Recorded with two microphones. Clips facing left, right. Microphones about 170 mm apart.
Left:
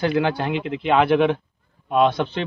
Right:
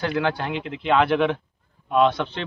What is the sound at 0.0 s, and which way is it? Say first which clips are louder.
A man's voice: left 3 dB; 15° left (ahead or behind).